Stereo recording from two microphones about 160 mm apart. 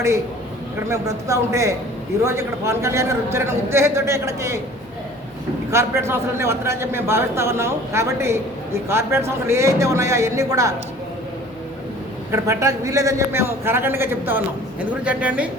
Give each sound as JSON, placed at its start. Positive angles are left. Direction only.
{"t": 0.9, "sound": "a man's voice", "side_deg": -20}
{"t": 5.7, "sound": "a man's voice", "side_deg": -15}
{"t": 12.3, "sound": "a man's voice", "side_deg": -20}